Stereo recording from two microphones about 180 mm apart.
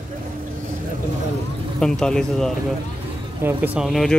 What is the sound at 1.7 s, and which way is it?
Speech, 5° left (ahead or behind).